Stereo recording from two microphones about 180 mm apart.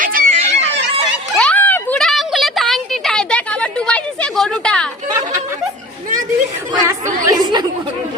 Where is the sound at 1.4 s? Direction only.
10° left (ahead or behind).